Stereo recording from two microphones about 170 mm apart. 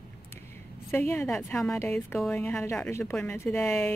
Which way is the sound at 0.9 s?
10° left (ahead or behind).